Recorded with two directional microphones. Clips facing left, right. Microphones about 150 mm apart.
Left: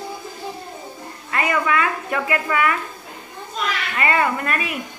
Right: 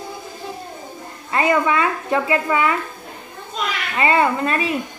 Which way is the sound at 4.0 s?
25° right (ahead or behind).